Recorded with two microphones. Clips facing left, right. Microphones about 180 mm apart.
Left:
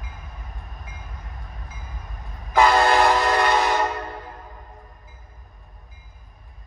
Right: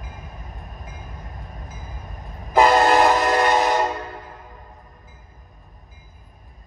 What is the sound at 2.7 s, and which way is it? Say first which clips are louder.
Train: right 2 dB; 20° right (ahead or behind).